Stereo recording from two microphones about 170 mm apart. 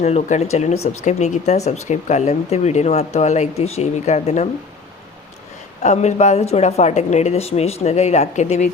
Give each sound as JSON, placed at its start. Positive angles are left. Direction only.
{"t": 0.0, "sound": "speech", "side_deg": 45}
{"t": 5.8, "sound": "speech", "side_deg": 45}